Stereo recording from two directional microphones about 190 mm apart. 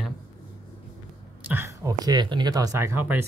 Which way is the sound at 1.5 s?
15° right (ahead or behind).